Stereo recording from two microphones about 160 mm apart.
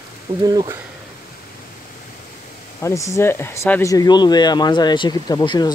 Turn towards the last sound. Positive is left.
turn(degrees=25)  # may be behind; listen again after turning